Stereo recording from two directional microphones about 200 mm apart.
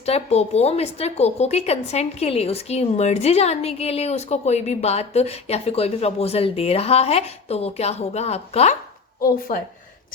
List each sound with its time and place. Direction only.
0.0 s a woman's voice: 30° left (ahead or behind)